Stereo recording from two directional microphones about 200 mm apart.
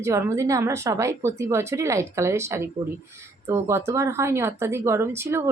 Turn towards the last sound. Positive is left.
turn(degrees=-15)  # may be behind; listen again after turning